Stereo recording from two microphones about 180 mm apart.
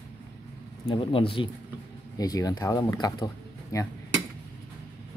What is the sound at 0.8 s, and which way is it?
Speech, 30° left (ahead or behind).